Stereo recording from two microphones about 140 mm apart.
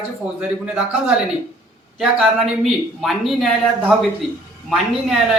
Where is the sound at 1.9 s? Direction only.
5° right (ahead or behind).